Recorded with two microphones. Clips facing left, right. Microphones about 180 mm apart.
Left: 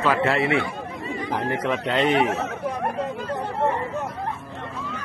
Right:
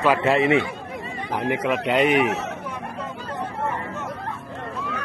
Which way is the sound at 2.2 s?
75° right (ahead or behind).